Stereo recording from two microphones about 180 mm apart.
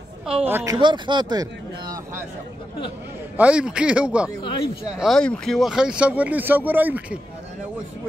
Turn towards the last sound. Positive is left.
turn(degrees=-10)  # may be behind; listen again after turning